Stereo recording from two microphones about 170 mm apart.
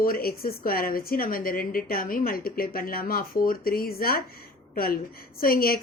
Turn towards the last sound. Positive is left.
turn(degrees=60)  # may be behind; listen again after turning